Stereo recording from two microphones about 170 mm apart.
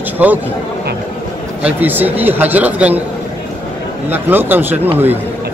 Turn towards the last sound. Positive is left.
turn(degrees=-10)  # may be behind; listen again after turning